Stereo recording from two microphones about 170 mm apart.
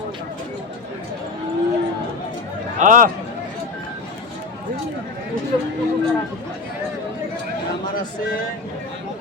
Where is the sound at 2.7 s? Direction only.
50° right (ahead or behind).